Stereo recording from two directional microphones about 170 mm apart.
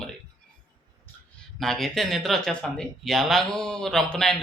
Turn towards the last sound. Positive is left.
turn(degrees=5)  # may be behind; listen again after turning